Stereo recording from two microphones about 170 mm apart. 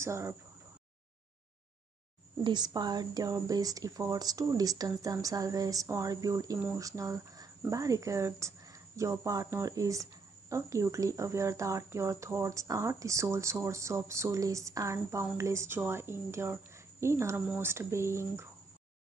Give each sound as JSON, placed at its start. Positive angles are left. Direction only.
{"t": 0.0, "sound": "speech", "side_deg": -15}
{"t": 2.4, "sound": "speech", "side_deg": -25}